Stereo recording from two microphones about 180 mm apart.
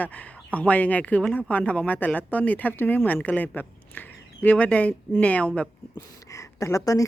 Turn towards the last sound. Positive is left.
turn(degrees=20)  # may be behind; listen again after turning